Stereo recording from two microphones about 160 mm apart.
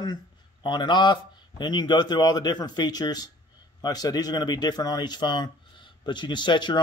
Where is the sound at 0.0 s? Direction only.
25° left (ahead or behind).